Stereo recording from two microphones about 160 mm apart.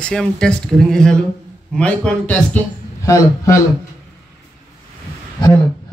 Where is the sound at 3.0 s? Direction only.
20° left (ahead or behind).